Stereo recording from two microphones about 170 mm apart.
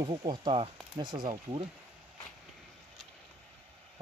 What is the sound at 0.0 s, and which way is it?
Speech, 25° right (ahead or behind).